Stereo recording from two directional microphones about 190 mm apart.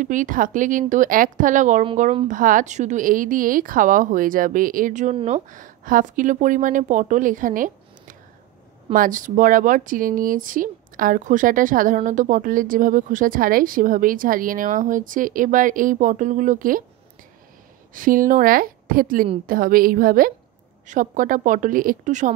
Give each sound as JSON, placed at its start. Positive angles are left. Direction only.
{"t": 0.0, "sound": "speech", "side_deg": -45}
{"t": 17.9, "sound": "speech", "side_deg": -45}